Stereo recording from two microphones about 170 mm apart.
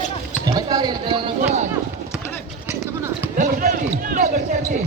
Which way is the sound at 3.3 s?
50° right (ahead or behind).